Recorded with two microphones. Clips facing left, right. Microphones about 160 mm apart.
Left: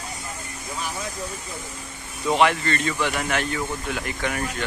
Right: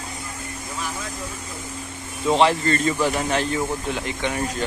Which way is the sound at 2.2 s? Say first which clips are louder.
Right 2 dB; 30° right (ahead or behind).